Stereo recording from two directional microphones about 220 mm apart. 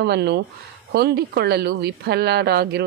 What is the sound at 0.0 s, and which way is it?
Speech, 50° right (ahead or behind).